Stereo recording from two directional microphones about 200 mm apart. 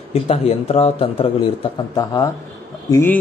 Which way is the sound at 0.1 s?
30° left (ahead or behind).